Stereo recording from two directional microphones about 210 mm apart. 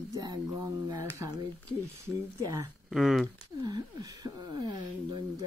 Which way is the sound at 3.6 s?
20° right (ahead or behind).